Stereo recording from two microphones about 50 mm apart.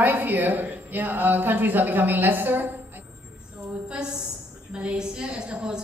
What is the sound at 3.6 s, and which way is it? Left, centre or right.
A woman's voice, centre.